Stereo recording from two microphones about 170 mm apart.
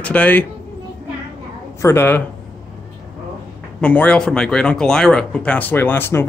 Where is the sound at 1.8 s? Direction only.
10° left (ahead or behind).